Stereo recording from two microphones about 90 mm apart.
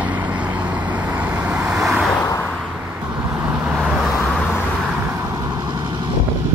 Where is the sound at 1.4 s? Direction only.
15° right (ahead or behind).